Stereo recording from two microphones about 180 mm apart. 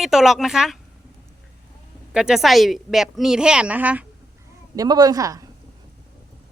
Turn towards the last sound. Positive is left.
turn(degrees=-20)  # may be behind; listen again after turning